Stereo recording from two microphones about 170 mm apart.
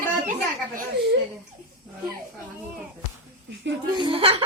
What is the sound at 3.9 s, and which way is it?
Speech, 30° right (ahead or behind).